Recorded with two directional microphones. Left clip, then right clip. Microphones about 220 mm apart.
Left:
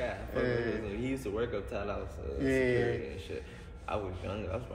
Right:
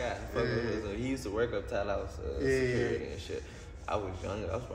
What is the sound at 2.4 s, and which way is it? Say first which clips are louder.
Speech: left 1 dB; 40° left (ahead or behind).